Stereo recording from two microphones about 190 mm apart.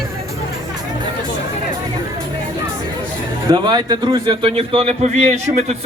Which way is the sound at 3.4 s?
25° right (ahead or behind).